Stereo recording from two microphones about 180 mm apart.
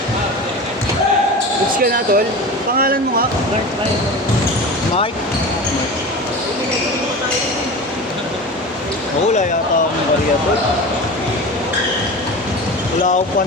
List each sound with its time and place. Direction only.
1.8 s speech: 55° right (ahead or behind)